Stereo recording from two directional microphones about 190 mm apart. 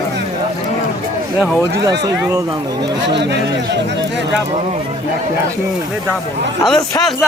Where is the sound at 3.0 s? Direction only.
65° right (ahead or behind).